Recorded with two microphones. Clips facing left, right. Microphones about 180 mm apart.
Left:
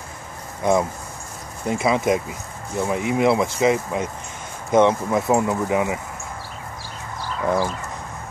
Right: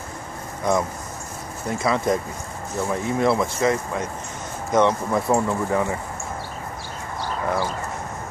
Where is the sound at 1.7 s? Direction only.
20° left (ahead or behind).